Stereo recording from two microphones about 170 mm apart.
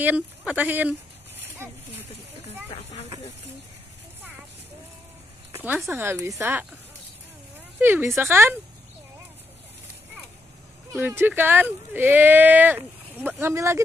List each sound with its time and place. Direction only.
0.0 s speech: 10° right (ahead or behind)
5.5 s speech: 10° right (ahead or behind)
8.2 s speech: 15° right (ahead or behind)
10.9 s speech: 10° right (ahead or behind)